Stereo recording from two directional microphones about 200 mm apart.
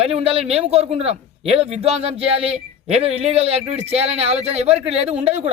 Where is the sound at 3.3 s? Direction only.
30° right (ahead or behind).